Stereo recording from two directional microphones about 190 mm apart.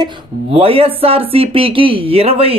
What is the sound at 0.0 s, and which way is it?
Speech, 30° right (ahead or behind).